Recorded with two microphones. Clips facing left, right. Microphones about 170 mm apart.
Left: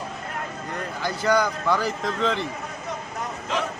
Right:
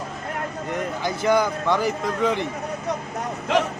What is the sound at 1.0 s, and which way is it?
A man's voice, 20° right (ahead or behind).